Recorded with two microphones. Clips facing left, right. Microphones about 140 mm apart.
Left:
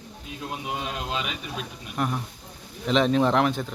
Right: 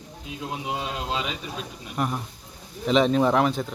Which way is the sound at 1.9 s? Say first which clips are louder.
Even; centre (ahead or behind).